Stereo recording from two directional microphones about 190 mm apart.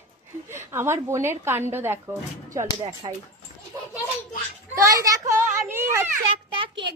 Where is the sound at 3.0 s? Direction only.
30° right (ahead or behind).